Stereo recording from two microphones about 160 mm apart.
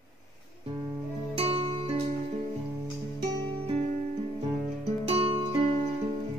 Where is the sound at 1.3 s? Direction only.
35° right (ahead or behind).